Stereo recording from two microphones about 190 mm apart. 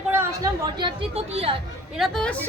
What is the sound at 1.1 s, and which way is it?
Speech, 30° right (ahead or behind).